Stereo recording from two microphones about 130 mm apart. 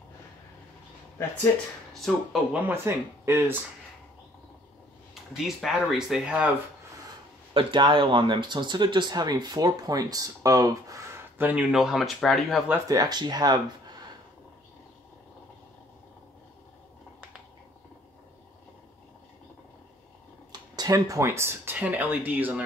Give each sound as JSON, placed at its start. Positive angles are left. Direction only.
{"t": 2.5, "sound": "speech", "side_deg": -20}
{"t": 5.6, "sound": "speech", "side_deg": 0}
{"t": 7.5, "sound": "speech", "side_deg": -40}
{"t": 11.3, "sound": "speech", "side_deg": -15}
{"t": 11.7, "sound": "speech", "side_deg": 0}
{"t": 12.8, "sound": "speech", "side_deg": -30}
{"t": 20.7, "sound": "speech", "side_deg": -30}